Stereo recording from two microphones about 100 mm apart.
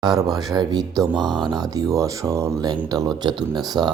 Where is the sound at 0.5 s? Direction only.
45° right (ahead or behind).